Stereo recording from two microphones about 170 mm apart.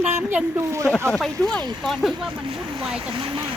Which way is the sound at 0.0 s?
10° right (ahead or behind).